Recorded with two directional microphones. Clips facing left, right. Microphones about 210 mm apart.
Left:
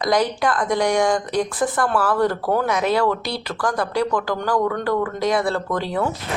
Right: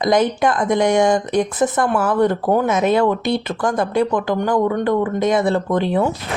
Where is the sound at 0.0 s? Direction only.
20° right (ahead or behind).